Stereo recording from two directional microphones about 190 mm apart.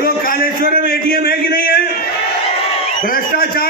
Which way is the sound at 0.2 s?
50° left (ahead or behind).